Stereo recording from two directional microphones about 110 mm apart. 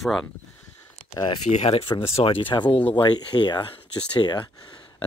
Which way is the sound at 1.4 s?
85° left.